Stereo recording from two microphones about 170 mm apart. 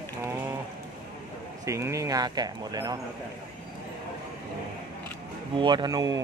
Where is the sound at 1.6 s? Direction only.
15° right (ahead or behind).